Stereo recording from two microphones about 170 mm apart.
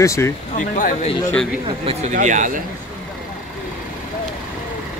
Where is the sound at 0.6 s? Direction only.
45° left (ahead or behind).